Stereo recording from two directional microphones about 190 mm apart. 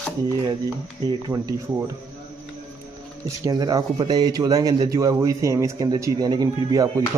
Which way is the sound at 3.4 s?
20° right (ahead or behind).